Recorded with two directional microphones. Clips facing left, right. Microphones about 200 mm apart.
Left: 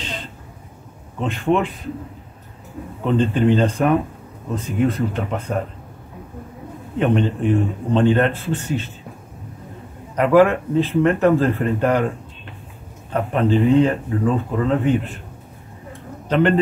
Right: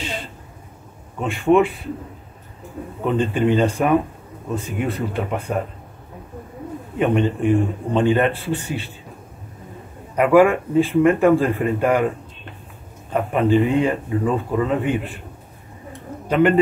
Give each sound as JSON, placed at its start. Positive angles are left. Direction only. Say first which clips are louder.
{"t": 0.0, "sound": "a sound", "louder": "right 2 dB", "side_deg": -10}
{"t": 1.2, "sound": "a man's voice", "louder": "right 3 dB", "side_deg": -10}
{"t": 3.2, "sound": "a man's voice", "louder": "left 1 dB", "side_deg": -10}
{"t": 7.0, "sound": "a man's voice", "louder": "even", "side_deg": -10}
{"t": 10.1, "sound": "a man's voice", "louder": "even", "side_deg": -10}
{"t": 13.1, "sound": "a man's voice", "louder": "right 1 dB", "side_deg": -10}